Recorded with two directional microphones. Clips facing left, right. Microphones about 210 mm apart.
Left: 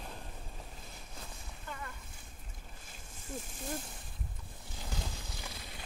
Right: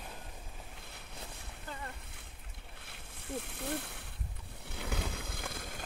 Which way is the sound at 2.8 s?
65° right (ahead or behind).